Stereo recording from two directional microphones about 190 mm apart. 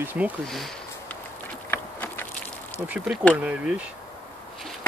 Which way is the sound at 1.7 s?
10° left (ahead or behind).